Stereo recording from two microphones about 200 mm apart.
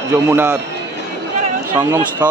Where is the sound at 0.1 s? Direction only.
10° right (ahead or behind).